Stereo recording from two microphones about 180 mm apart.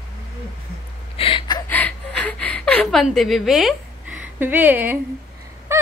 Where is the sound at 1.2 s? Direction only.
30° left (ahead or behind).